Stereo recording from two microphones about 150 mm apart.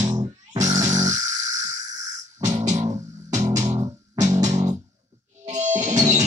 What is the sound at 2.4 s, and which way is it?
Music, 50° right (ahead or behind).